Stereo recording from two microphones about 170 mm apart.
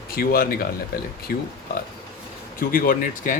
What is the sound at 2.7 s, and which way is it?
Speech, 55° left (ahead or behind).